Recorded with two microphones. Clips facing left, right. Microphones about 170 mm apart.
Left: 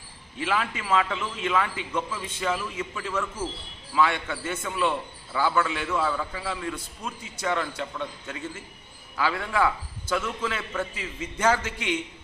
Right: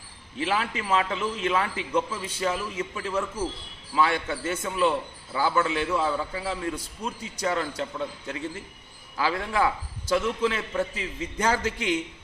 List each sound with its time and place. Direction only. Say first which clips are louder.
0.3 s a man's voice: right 1 dB; 35° right (ahead or behind)
5.3 s a man's voice: right 1 dB; 30° right (ahead or behind)
5.9 s a man's voice: right 1 dB; 20° right (ahead or behind)
6.5 s a man's voice: right 2 dB; 35° right (ahead or behind)